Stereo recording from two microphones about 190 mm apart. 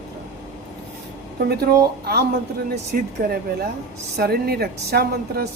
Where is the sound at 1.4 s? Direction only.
55° right (ahead or behind).